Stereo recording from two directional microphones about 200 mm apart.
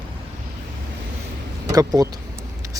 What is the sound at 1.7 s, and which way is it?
Speech, 15° right (ahead or behind).